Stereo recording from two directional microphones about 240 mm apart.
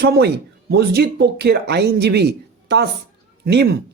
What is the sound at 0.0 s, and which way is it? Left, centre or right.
A man's voice, right.